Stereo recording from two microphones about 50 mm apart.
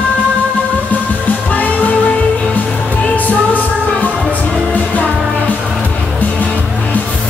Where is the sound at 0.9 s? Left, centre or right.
Left.